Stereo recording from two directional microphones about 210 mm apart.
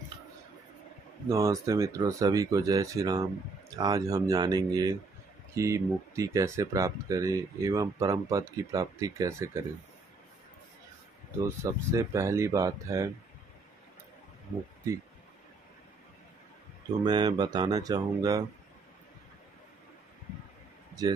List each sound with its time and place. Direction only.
1.3 s speech: 15° right (ahead or behind)
11.4 s speech: 15° right (ahead or behind)
17.0 s speech: 20° right (ahead or behind)
21.0 s speech: 15° right (ahead or behind)